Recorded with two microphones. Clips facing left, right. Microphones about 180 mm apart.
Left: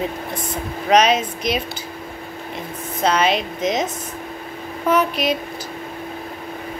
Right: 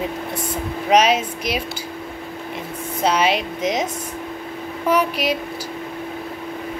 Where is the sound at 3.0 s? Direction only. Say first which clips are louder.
Even; 10° right (ahead or behind).